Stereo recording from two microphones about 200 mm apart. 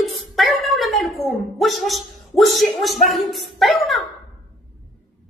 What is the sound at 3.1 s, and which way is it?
Speech, centre (ahead or behind).